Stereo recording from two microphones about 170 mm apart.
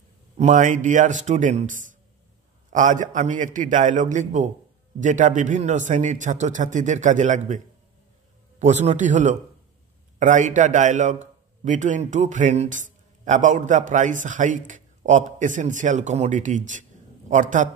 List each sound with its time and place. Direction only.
0.4 s a man's voice: 45° right (ahead or behind)